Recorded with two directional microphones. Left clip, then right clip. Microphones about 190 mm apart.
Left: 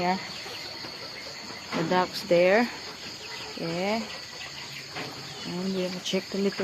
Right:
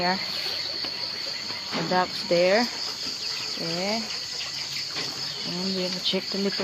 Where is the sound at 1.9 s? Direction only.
20° left (ahead or behind).